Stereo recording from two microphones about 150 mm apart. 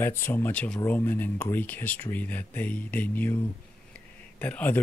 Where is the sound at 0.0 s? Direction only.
15° left (ahead or behind).